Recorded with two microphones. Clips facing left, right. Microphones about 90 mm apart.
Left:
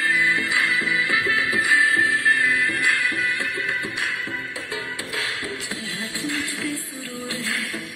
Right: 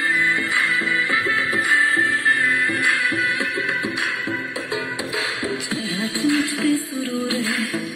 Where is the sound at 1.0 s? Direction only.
Centre (ahead or behind).